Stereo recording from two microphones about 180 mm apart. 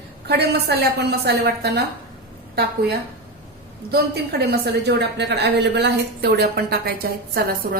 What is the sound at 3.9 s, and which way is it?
A woman's voice, 60° right (ahead or behind).